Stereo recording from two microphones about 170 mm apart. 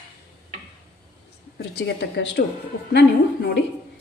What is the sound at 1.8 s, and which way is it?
Speech, 85° left.